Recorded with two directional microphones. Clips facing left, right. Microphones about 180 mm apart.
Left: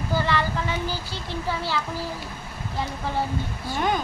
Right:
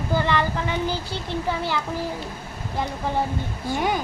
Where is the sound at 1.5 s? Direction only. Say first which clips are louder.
Right 1 dB; 20° right (ahead or behind).